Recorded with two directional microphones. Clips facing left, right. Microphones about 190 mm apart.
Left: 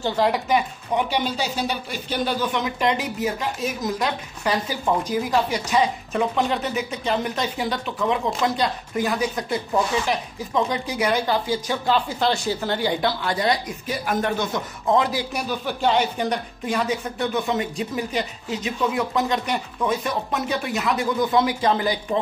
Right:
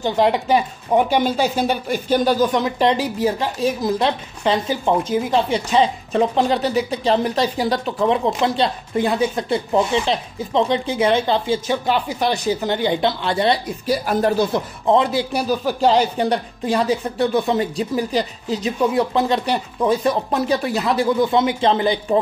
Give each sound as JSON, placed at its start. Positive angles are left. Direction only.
{"t": 0.0, "sound": "speech", "side_deg": -20}
{"t": 0.9, "sound": "speech", "side_deg": -50}